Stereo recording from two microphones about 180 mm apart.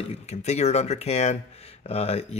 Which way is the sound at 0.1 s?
40° left (ahead or behind).